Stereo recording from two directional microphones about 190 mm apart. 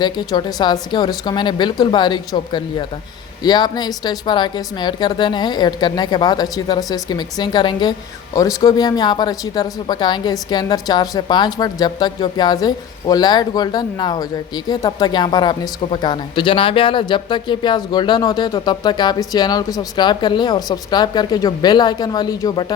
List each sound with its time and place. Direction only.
0.0 s a woman's voice: 20° left (ahead or behind)